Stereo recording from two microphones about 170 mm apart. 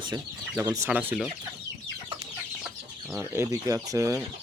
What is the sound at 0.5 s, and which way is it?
Speech, 15° right (ahead or behind).